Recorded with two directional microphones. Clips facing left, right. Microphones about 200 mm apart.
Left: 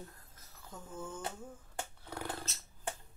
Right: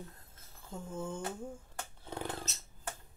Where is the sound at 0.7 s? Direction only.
25° right (ahead or behind).